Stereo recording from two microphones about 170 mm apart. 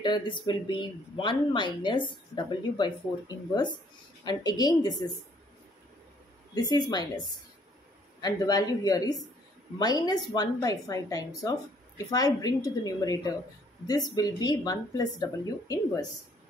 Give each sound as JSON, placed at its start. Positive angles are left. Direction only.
{"t": 0.0, "sound": "speech", "side_deg": 25}
{"t": 6.5, "sound": "speech", "side_deg": 25}